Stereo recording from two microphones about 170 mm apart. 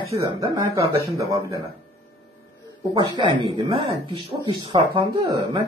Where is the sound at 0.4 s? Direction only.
20° right (ahead or behind).